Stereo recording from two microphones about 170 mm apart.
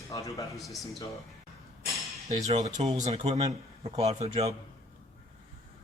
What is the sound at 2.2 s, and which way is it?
A man's voice, 40° right (ahead or behind).